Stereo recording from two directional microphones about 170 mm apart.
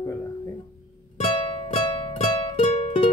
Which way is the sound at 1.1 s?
35° left (ahead or behind).